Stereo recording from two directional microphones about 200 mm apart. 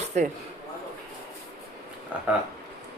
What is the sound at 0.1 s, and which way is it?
Speech, 35° right (ahead or behind).